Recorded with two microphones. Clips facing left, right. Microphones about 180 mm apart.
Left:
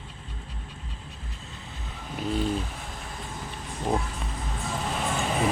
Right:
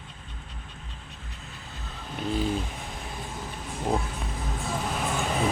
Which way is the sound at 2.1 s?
Centre (ahead or behind).